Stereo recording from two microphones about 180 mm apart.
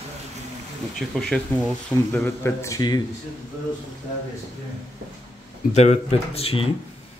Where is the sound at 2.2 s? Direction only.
15° left (ahead or behind).